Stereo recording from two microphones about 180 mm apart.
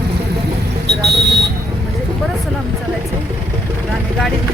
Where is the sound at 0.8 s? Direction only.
70° right (ahead or behind).